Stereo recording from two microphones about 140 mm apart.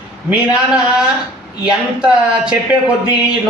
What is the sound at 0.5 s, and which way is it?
Speech, 5° right (ahead or behind).